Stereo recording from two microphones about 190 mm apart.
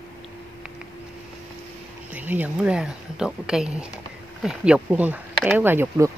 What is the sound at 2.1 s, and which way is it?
Speech, 10° right (ahead or behind).